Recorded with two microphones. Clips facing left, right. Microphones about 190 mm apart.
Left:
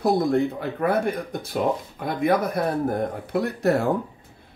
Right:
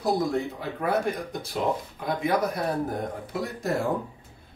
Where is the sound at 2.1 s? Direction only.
55° left (ahead or behind).